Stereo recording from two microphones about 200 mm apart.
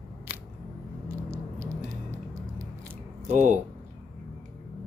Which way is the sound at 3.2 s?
35° right (ahead or behind).